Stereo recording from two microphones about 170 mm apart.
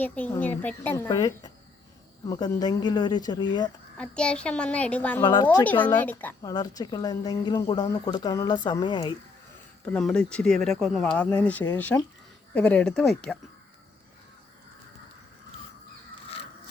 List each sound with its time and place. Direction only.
0.0 s a child's voice: 10° left (ahead or behind)
1.0 s speech: 20° left (ahead or behind)
3.9 s a child's voice: 5° left (ahead or behind)
5.2 s speech: 25° left (ahead or behind)
5.6 s a child's voice: 10° left (ahead or behind)
6.4 s speech: 25° left (ahead or behind)
9.8 s a child's voice: 5° left (ahead or behind)